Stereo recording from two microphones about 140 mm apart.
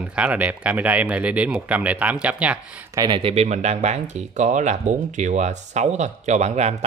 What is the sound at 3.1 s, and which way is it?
Speech, 45° right (ahead or behind).